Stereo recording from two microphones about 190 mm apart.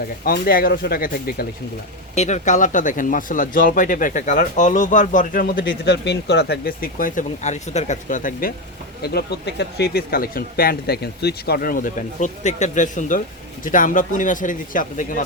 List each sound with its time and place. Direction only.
0.3 s speech: 50° left (ahead or behind)
2.1 s speech: 40° left (ahead or behind)
9.0 s speech: 60° left (ahead or behind)